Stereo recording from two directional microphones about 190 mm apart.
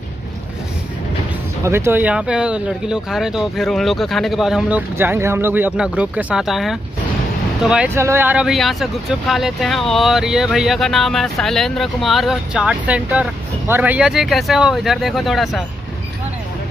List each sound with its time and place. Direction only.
1.6 s speech: 15° right (ahead or behind)